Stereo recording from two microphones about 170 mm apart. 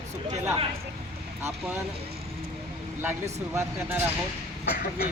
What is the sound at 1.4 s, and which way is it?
Speech, 10° right (ahead or behind).